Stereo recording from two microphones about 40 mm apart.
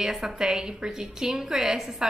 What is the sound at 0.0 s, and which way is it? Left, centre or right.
A woman's voice, centre.